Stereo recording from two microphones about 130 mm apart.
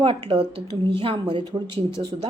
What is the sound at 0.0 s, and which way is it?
Speech, 45° right (ahead or behind).